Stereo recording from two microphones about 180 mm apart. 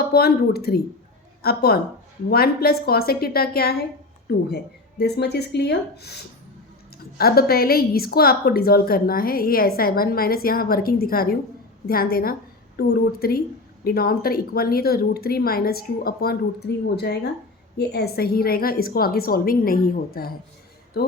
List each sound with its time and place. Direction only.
0.0 s a woman's voice: 60° left (ahead or behind)
7.2 s a woman's voice: 55° left (ahead or behind)